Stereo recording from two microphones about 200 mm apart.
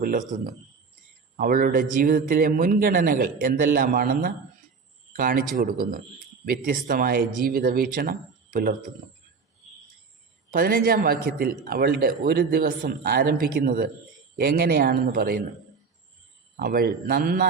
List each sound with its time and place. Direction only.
0.0 s a man's voice: 40° right (ahead or behind)
10.5 s a man's voice: 45° right (ahead or behind)
16.6 s a man's voice: 50° right (ahead or behind)